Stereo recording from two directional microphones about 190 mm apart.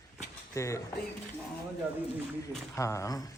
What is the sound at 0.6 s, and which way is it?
Speech, 15° left (ahead or behind).